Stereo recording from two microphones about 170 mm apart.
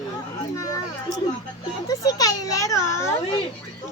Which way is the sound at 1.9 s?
20° left (ahead or behind).